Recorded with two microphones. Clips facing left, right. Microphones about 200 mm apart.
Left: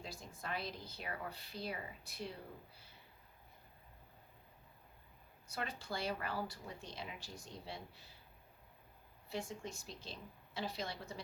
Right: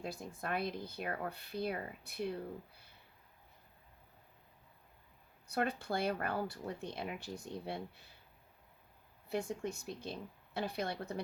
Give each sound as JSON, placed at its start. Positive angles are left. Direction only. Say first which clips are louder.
{"t": 0.0, "sound": "speech", "louder": "right 6 dB", "side_deg": -55}
{"t": 5.5, "sound": "speech", "louder": "right 8 dB", "side_deg": -55}
{"t": 9.3, "sound": "speech", "louder": "right 6 dB", "side_deg": -60}